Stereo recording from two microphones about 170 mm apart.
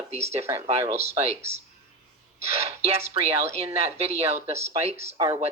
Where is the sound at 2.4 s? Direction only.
35° right (ahead or behind).